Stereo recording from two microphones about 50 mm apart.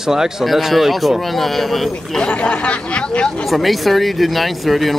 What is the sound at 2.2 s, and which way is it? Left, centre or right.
Speech, left.